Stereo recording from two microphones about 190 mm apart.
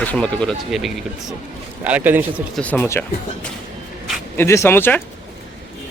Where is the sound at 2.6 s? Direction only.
10° left (ahead or behind).